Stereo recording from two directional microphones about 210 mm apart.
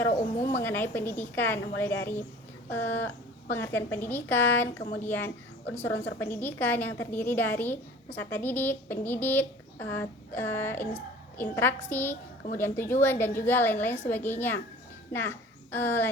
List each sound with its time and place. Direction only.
0.1 s speech: 35° left (ahead or behind)
0.4 s a woman's voice: 10° left (ahead or behind)